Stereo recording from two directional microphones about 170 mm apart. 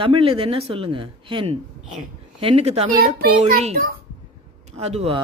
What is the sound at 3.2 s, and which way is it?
Speech, 55° right (ahead or behind).